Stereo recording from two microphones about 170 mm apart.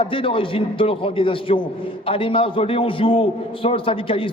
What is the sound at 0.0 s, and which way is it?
A man's voice, 30° left (ahead or behind).